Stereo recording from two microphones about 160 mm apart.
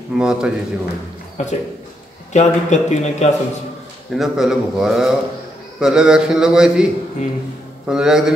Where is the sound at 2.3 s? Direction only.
45° left (ahead or behind).